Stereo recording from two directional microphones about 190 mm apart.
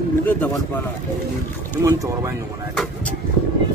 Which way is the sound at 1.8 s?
15° right (ahead or behind).